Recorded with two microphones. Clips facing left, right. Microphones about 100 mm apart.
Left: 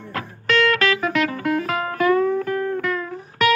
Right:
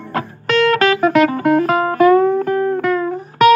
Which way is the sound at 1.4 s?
40° right (ahead or behind).